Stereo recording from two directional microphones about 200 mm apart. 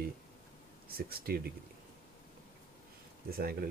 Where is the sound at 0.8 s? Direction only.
50° right (ahead or behind).